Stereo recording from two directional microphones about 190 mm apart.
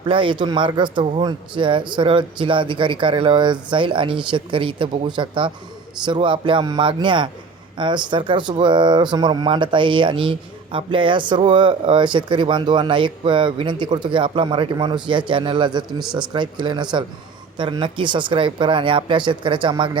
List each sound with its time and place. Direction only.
0.0 s speech: 25° right (ahead or behind)